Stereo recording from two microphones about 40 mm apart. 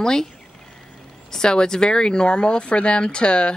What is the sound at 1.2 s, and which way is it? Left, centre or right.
A woman's voice, centre.